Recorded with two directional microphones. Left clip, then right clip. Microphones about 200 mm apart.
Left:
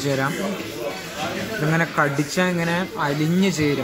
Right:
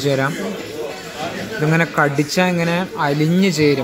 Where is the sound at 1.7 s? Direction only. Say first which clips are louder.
Right 4 dB; 15° right (ahead or behind).